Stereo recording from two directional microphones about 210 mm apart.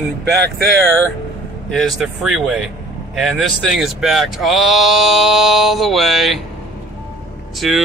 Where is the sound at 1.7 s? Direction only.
Centre (ahead or behind).